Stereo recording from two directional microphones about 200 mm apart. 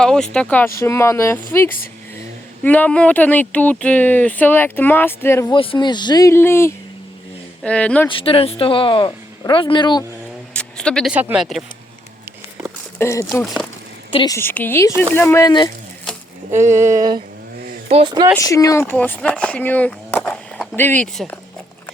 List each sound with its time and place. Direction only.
0.0 s speech: 5° left (ahead or behind)
5.5 s speech: 25° left (ahead or behind); by 8.1 s 5° left (ahead or behind)
8.1 s speech: 25° left (ahead or behind)
10.5 s speech: 5° left (ahead or behind)
13.0 s speech: 15° left (ahead or behind)
13.4 s speech: centre (ahead or behind)
14.1 s a woman's voice: 25° left (ahead or behind)
14.3 s speech: 10° left (ahead or behind)
16.5 s a sound: 15° right (ahead or behind)
17.8 s speech: 30° right (ahead or behind)
18.3 s speech: 15° left (ahead or behind)